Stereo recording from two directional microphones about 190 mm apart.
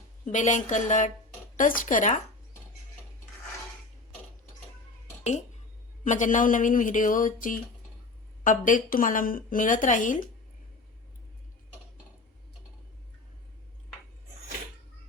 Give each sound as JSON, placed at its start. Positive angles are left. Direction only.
{"t": 0.3, "sound": "a woman's voice", "side_deg": 40}
{"t": 6.1, "sound": "a woman's voice", "side_deg": 40}